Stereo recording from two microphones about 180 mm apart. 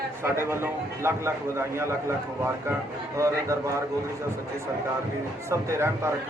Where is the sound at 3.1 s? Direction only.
15° right (ahead or behind).